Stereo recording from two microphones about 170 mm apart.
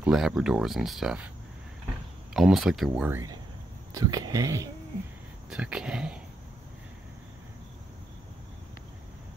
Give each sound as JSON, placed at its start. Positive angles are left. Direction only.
{"t": 0.0, "sound": "speech", "side_deg": -5}
{"t": 2.3, "sound": "speech", "side_deg": 0}
{"t": 2.9, "sound": "speech", "side_deg": -10}
{"t": 5.5, "sound": "speech", "side_deg": -5}